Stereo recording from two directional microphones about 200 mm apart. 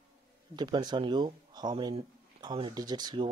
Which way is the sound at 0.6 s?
20° right (ahead or behind).